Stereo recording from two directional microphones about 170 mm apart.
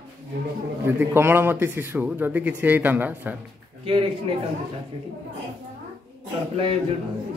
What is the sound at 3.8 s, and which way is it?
Speech, 35° right (ahead or behind).